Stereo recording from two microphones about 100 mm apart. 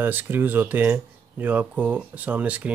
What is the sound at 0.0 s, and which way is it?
Speech, 20° right (ahead or behind).